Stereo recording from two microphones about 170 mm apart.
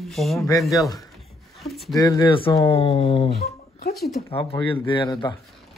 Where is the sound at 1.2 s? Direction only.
Centre (ahead or behind).